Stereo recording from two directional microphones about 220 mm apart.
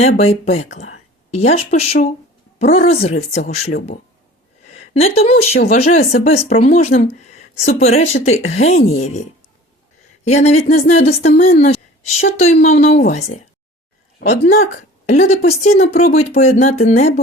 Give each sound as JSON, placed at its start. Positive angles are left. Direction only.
{"t": 0.2, "sound": "speech", "side_deg": 30}
{"t": 10.2, "sound": "speech", "side_deg": 30}
{"t": 15.0, "sound": "speech", "side_deg": 30}